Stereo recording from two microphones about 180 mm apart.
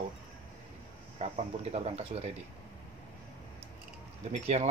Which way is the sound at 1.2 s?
35° right (ahead or behind).